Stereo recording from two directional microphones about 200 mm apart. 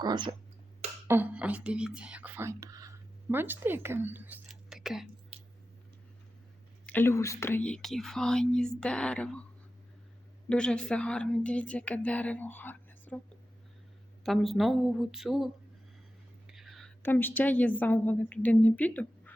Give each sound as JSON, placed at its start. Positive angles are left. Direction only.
{"t": 0.0, "sound": "speech", "side_deg": -20}
{"t": 1.0, "sound": "speech", "side_deg": -10}
{"t": 6.8, "sound": "speech", "side_deg": 10}
{"t": 10.5, "sound": "a woman's voice", "side_deg": 5}
{"t": 14.3, "sound": "speech", "side_deg": 0}
{"t": 16.5, "sound": "a woman's voice", "side_deg": 0}